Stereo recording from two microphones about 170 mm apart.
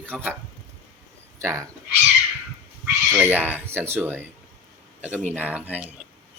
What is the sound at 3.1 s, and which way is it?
A man's voice, 10° right (ahead or behind).